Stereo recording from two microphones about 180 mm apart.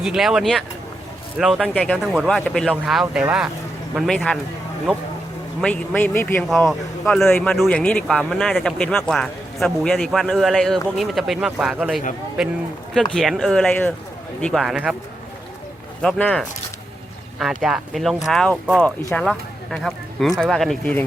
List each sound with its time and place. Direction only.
0.0 s speech: 5° right (ahead or behind)
5.5 s a man's voice: 10° left (ahead or behind)
6.7 s speech: centre (ahead or behind)
7.3 s a man's voice: 10° left (ahead or behind)
7.5 s speech: centre (ahead or behind)
16.0 s speech: 5° left (ahead or behind)